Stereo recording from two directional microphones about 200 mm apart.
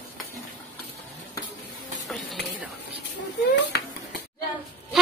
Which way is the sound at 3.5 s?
55° left (ahead or behind).